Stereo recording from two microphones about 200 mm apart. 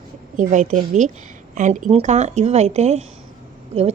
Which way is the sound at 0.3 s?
40° right (ahead or behind).